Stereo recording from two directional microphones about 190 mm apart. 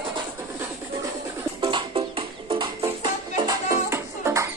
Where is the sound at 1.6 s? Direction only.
25° right (ahead or behind).